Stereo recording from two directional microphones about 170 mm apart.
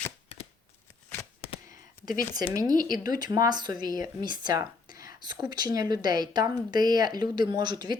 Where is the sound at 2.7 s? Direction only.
55° left (ahead or behind).